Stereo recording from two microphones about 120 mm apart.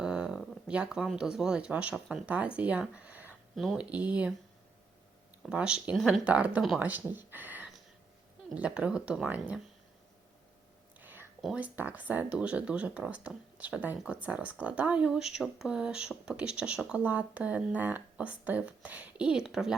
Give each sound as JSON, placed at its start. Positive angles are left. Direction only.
{"t": 0.0, "sound": "speech", "side_deg": -5}
{"t": 3.5, "sound": "speech", "side_deg": 0}
{"t": 5.5, "sound": "speech", "side_deg": -10}
{"t": 11.0, "sound": "a sound", "side_deg": -15}
{"t": 11.5, "sound": "speech", "side_deg": -15}